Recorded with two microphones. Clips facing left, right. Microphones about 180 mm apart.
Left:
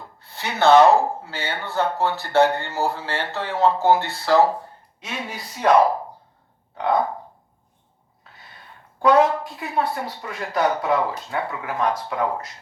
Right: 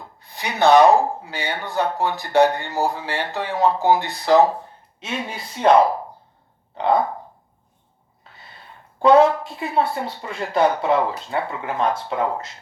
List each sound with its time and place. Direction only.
0.2 s speech: 15° right (ahead or behind)
9.0 s speech: 25° right (ahead or behind)